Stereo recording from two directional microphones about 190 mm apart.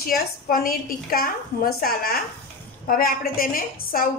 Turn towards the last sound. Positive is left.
turn(degrees=50)  # may be behind; listen again after turning